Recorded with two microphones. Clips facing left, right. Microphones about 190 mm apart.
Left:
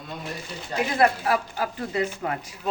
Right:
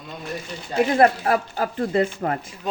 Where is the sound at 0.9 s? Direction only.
40° right (ahead or behind).